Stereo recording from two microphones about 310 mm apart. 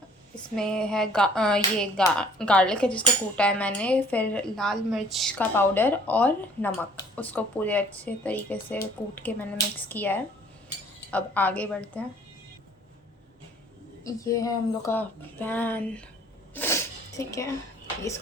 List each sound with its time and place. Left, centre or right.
0.5 s speech: centre
14.0 s speech: centre
16.6 s a sound: centre